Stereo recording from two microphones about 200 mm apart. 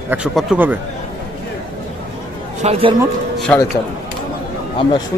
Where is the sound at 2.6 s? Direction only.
30° right (ahead or behind).